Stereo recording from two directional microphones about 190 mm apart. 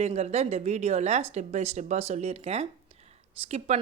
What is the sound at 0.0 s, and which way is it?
Speech, 35° right (ahead or behind).